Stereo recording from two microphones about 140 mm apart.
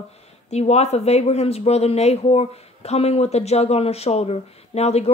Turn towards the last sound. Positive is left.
turn(degrees=50)  # may be behind; listen again after turning